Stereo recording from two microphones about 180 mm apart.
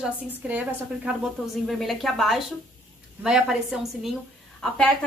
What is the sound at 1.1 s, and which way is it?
A woman's voice, 5° right (ahead or behind).